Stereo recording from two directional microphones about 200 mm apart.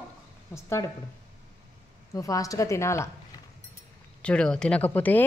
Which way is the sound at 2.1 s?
15° left (ahead or behind).